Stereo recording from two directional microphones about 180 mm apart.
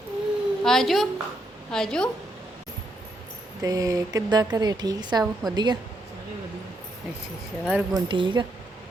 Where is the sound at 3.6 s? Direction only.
20° right (ahead or behind).